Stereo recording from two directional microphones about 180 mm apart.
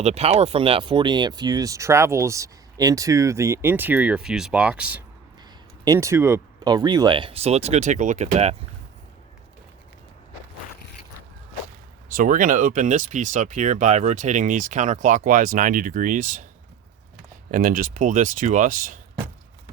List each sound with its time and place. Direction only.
0.0 s speech: 35° right (ahead or behind); by 5.0 s 10° right (ahead or behind)
5.8 s speech: 20° right (ahead or behind); by 8.5 s 35° right (ahead or behind)
12.1 s speech: 50° right (ahead or behind)
17.5 s speech: 50° right (ahead or behind)